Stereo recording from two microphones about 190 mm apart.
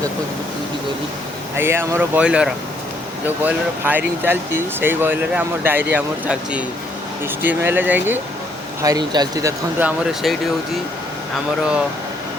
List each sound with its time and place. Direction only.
1.5 s speech: 10° right (ahead or behind)